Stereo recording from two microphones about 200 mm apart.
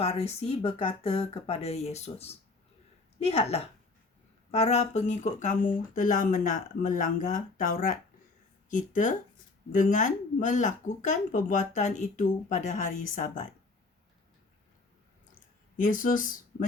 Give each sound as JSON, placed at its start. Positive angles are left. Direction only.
{"t": 0.0, "sound": "speech", "side_deg": 30}
{"t": 15.8, "sound": "speech", "side_deg": 40}